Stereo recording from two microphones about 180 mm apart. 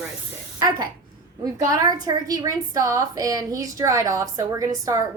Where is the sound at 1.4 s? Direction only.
20° right (ahead or behind).